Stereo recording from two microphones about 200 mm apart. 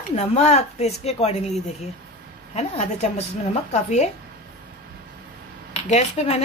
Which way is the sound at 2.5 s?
35° left (ahead or behind).